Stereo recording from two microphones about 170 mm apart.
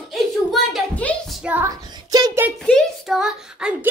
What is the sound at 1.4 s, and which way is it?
Speech, 10° right (ahead or behind).